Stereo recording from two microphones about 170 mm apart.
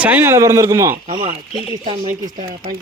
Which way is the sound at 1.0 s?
40° right (ahead or behind).